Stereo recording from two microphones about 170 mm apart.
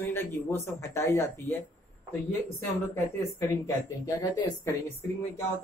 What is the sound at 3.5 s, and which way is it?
Speech, 20° left (ahead or behind).